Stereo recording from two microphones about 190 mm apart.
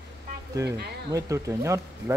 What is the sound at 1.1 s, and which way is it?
Speech, 15° right (ahead or behind).